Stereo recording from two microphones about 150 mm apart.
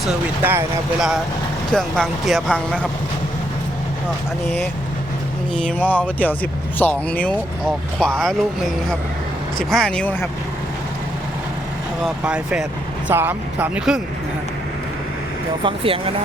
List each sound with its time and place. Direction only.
0.4 s speech: 10° right (ahead or behind); by 2.8 s 5° left (ahead or behind)
5.5 s speech: 10° left (ahead or behind)
12.0 s speech: 5° right (ahead or behind)
15.6 s speech: 35° right (ahead or behind)